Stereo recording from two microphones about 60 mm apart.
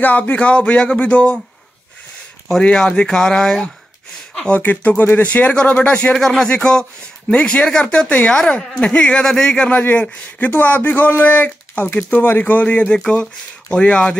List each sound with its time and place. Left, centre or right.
0.0 s speech: left
2.6 s speech: centre
4.6 s speech: left
6.1 s speech: centre
9.2 s speech: centre
9.7 s speech: left